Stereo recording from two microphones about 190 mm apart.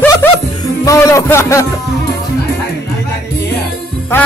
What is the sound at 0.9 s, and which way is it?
Speech, 15° left (ahead or behind).